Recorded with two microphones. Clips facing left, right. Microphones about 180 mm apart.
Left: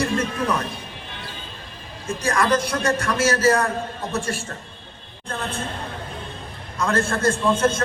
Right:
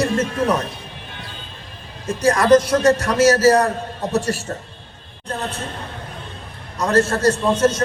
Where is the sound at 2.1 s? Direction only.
40° right (ahead or behind).